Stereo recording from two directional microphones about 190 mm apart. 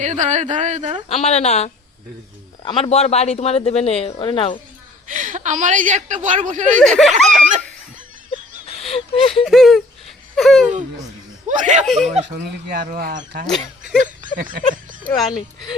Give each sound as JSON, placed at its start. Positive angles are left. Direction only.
{"t": 0.0, "sound": "a woman's voice", "side_deg": -40}
{"t": 1.0, "sound": "speech", "side_deg": 35}
{"t": 5.0, "sound": "a woman's voice", "side_deg": -40}
{"t": 6.7, "sound": "speech", "side_deg": 0}
{"t": 7.3, "sound": "a woman's voice", "side_deg": -40}
{"t": 8.6, "sound": "a sound", "side_deg": 30}
{"t": 9.4, "sound": "a sound", "side_deg": 0}
{"t": 11.4, "sound": "speech", "side_deg": -40}
{"t": 11.9, "sound": "speech", "side_deg": 0}
{"t": 12.3, "sound": "speech", "side_deg": -55}